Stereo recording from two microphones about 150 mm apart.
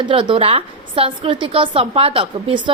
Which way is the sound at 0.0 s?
35° right (ahead or behind).